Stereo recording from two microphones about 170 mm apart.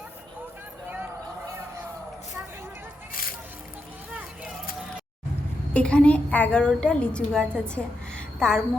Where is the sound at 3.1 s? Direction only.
55° left (ahead or behind).